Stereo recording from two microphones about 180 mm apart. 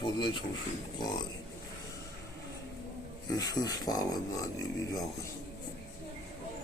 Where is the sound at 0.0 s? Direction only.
25° left (ahead or behind).